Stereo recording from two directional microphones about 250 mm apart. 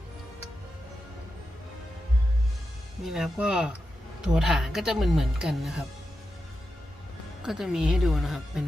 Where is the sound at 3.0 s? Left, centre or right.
Centre.